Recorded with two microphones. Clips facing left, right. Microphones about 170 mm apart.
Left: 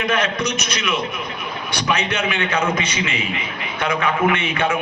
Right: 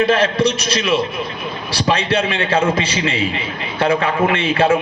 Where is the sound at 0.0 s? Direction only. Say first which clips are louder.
Right 6 dB; 30° right (ahead or behind).